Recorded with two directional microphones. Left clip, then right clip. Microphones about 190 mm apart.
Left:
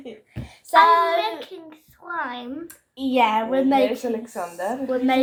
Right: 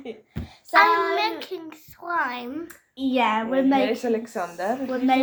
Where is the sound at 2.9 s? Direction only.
25° left (ahead or behind).